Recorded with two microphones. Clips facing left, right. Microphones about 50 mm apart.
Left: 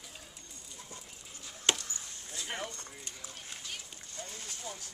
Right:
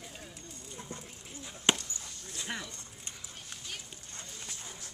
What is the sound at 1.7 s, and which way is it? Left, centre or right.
Chop, right.